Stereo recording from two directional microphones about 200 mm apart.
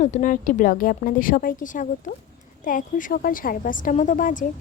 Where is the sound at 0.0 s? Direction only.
40° left (ahead or behind).